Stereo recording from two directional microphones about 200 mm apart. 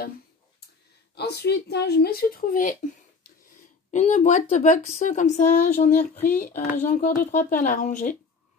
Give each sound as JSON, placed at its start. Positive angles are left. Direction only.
{"t": 1.1, "sound": "speech", "side_deg": 55}
{"t": 3.9, "sound": "speech", "side_deg": 35}